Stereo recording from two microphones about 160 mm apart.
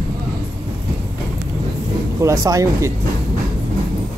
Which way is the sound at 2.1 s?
20° right (ahead or behind).